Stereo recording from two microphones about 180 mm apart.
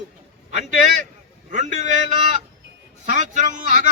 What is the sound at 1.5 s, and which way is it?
Speech, 40° right (ahead or behind).